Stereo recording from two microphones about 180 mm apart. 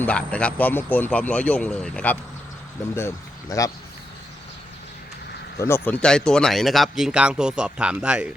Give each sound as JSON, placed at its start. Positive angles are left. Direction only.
{"t": 0.0, "sound": "speech", "side_deg": 5}
{"t": 3.5, "sound": "speech", "side_deg": 20}
{"t": 5.5, "sound": "speech", "side_deg": 15}